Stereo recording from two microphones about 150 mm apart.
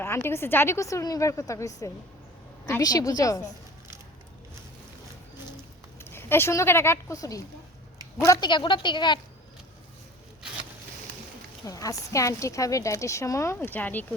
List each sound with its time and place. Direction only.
0.0 s a woman's voice: 15° left (ahead or behind)
6.1 s a woman's voice: 15° left (ahead or behind); by 9.2 s 30° left (ahead or behind)
11.6 s a woman's voice: 25° left (ahead or behind)